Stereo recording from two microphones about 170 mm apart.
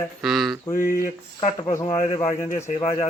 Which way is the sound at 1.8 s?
35° left (ahead or behind).